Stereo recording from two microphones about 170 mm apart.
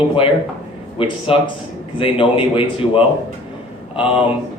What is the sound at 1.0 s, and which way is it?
Speech, 30° left (ahead or behind).